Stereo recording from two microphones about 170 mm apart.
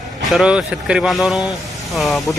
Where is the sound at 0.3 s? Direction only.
5° right (ahead or behind).